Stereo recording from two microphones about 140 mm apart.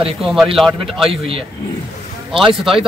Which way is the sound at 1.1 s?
45° right (ahead or behind).